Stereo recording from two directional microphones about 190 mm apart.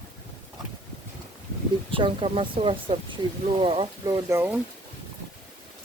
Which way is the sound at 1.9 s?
30° right (ahead or behind).